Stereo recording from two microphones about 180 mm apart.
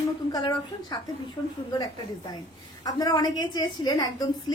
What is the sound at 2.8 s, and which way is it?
A woman's voice, 20° left (ahead or behind).